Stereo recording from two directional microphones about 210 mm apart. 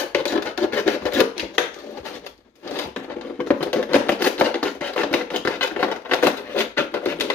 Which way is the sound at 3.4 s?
5° left (ahead or behind).